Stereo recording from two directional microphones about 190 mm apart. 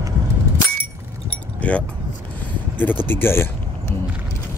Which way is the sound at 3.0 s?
10° left (ahead or behind).